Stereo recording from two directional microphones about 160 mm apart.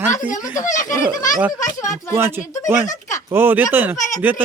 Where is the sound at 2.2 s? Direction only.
15° right (ahead or behind).